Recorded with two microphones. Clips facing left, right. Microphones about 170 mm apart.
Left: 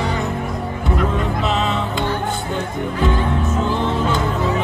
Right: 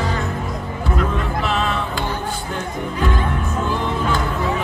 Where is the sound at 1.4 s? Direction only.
20° left (ahead or behind).